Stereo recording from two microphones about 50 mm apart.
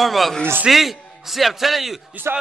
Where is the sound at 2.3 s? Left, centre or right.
Right.